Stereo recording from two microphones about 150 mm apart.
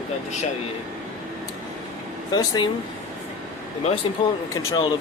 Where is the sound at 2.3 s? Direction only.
30° left (ahead or behind).